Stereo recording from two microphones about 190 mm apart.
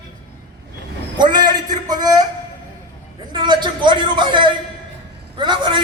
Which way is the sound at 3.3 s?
25° right (ahead or behind).